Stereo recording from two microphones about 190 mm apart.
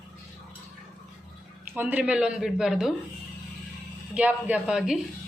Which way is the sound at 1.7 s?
5° right (ahead or behind).